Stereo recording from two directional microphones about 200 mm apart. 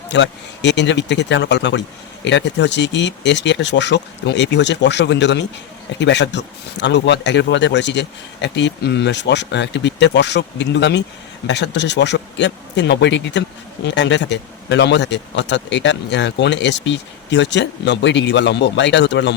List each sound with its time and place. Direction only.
0.1 s speech: 60° left (ahead or behind)